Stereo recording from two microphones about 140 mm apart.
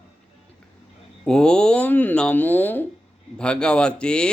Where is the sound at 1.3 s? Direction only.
5° left (ahead or behind).